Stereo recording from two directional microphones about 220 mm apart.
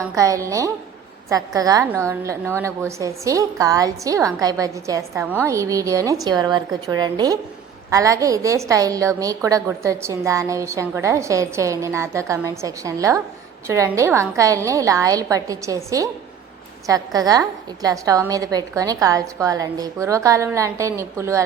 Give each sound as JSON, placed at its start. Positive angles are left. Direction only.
{"t": 0.2, "sound": "a woman's voice", "side_deg": -15}